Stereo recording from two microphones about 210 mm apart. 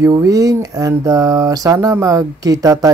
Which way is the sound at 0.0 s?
15° right (ahead or behind).